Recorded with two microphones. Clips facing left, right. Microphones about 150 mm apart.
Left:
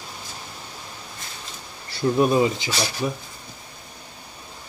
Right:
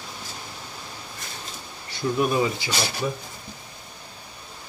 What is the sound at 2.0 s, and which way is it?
Speech, 30° left (ahead or behind).